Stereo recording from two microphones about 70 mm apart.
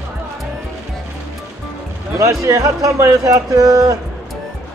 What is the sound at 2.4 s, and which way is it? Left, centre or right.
Speech, right.